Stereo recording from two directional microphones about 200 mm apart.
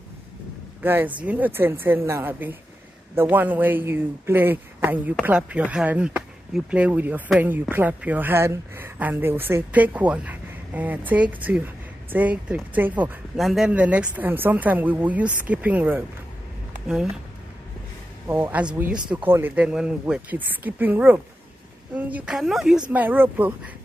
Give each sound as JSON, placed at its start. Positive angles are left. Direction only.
{"t": 0.8, "sound": "speech", "side_deg": -10}
{"t": 18.3, "sound": "speech", "side_deg": -10}